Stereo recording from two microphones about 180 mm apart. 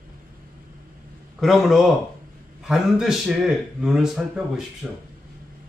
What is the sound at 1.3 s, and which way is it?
Speech, centre (ahead or behind).